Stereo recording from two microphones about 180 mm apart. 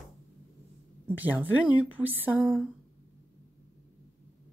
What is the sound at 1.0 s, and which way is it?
A woman's voice, 10° right (ahead or behind).